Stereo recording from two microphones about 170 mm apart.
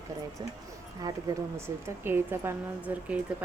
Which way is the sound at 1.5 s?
15° right (ahead or behind).